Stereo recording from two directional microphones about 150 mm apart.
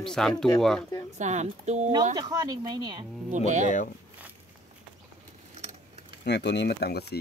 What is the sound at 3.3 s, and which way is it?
Speech, 55° right (ahead or behind).